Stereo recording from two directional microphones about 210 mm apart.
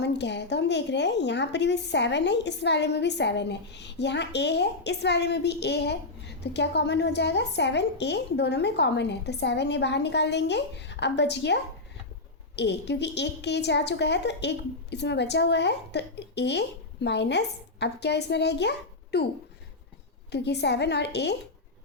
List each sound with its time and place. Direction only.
0.0 s a woman's voice: 55° left (ahead or behind)
20.3 s a woman's voice: 55° left (ahead or behind)